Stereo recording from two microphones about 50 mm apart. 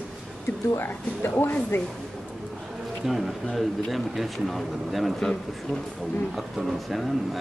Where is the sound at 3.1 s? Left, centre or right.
Centre.